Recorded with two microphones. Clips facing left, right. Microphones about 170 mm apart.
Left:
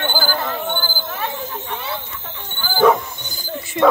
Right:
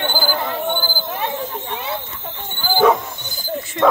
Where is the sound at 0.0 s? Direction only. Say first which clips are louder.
Right 1 dB; 15° right (ahead or behind).